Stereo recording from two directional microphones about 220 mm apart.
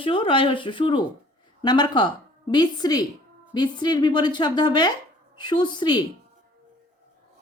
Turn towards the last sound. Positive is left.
turn(degrees=20)  # may be behind; listen again after turning